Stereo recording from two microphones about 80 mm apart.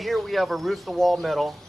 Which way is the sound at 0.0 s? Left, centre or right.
Centre.